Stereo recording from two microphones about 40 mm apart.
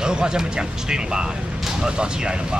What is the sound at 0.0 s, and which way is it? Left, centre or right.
Speech, centre.